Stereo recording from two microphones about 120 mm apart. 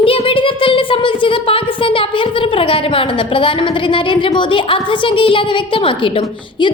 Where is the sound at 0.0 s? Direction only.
50° left (ahead or behind).